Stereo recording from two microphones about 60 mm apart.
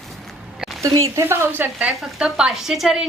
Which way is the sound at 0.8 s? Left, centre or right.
Right.